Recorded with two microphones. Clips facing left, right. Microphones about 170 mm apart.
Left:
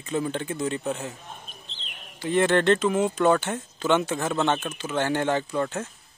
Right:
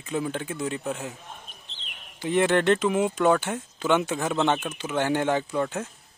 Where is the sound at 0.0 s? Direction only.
5° right (ahead or behind).